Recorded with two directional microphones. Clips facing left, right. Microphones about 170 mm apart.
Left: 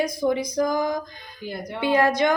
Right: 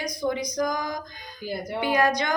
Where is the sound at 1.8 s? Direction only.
25° left (ahead or behind).